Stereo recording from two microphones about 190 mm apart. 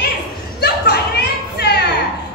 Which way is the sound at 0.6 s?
60° left (ahead or behind).